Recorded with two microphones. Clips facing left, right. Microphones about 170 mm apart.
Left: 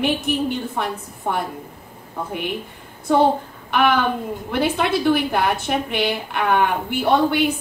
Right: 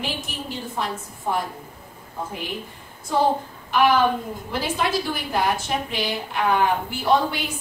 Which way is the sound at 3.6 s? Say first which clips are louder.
Even; 60° left (ahead or behind).